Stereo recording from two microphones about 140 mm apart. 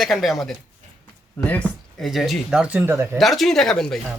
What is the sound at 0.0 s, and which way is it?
Speech, centre (ahead or behind).